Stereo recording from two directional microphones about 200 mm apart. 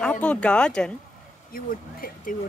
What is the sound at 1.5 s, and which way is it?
Speech, 45° left (ahead or behind).